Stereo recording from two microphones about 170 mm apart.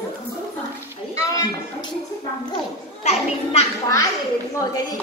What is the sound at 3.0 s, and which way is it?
Speech, 40° left (ahead or behind).